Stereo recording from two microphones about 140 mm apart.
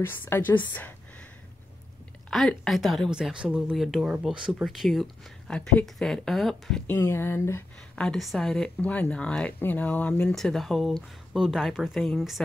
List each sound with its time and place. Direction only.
0.0 s speech: 15° left (ahead or behind)
2.3 s speech: centre (ahead or behind)
6.9 s speech: 15° left (ahead or behind)
7.9 s speech: 5° left (ahead or behind)